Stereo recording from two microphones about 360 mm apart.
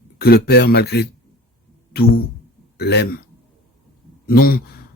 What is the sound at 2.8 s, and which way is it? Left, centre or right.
Speech, left.